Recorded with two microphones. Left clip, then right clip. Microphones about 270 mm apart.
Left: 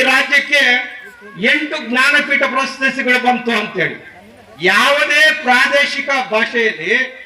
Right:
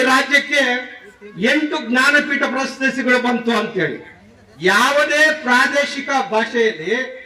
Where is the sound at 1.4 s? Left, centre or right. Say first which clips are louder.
Left 2 dB; right.